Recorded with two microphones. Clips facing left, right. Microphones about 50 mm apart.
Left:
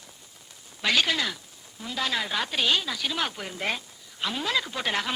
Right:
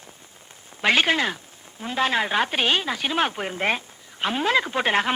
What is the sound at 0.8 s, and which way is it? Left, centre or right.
A woman's voice, right.